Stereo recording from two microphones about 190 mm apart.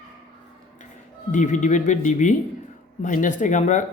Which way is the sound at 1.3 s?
40° left (ahead or behind).